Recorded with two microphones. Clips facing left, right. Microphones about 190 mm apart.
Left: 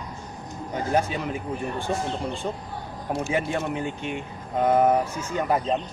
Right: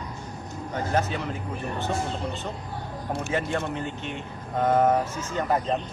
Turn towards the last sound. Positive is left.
turn(degrees=10)  # may be behind; listen again after turning